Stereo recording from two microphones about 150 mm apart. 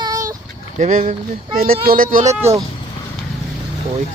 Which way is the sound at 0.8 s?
60° right (ahead or behind).